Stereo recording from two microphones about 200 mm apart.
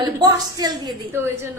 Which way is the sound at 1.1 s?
10° right (ahead or behind).